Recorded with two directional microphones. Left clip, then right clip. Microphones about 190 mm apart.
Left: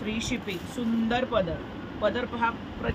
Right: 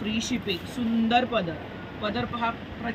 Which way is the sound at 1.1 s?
45° left (ahead or behind).